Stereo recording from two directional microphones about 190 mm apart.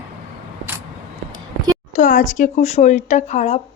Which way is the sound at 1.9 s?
40° left (ahead or behind).